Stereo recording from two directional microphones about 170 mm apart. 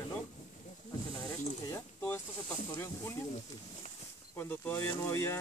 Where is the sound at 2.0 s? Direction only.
10° left (ahead or behind).